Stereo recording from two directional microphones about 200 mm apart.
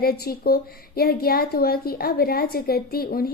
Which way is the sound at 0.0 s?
50° left (ahead or behind).